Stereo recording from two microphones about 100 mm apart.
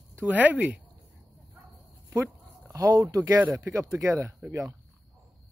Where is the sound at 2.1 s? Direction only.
30° right (ahead or behind).